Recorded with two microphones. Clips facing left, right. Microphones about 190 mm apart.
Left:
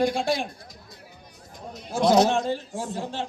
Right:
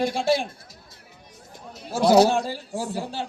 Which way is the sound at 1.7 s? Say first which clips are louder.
Right 2 dB; 5° right (ahead or behind).